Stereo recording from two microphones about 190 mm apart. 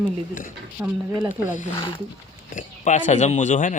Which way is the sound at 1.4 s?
40° left (ahead or behind).